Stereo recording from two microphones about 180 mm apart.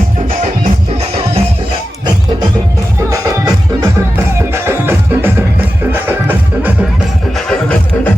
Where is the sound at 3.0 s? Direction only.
15° right (ahead or behind).